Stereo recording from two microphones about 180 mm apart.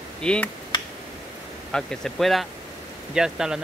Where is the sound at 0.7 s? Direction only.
25° left (ahead or behind).